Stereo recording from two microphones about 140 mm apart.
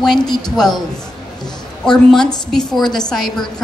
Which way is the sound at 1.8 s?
5° left (ahead or behind).